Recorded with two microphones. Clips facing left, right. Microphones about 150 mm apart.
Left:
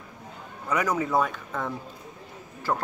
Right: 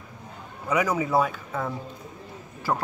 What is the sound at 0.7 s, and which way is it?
Speech, 10° right (ahead or behind).